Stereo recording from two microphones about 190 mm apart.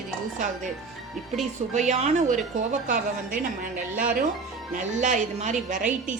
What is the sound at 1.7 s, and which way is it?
A woman's voice, 40° right (ahead or behind).